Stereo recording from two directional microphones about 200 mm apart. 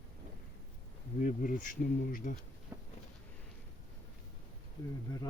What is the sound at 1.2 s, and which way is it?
Speech, 45° left (ahead or behind).